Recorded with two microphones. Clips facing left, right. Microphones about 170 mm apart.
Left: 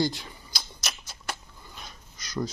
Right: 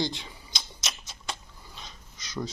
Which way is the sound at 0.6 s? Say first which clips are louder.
Left 1 dB; centre (ahead or behind).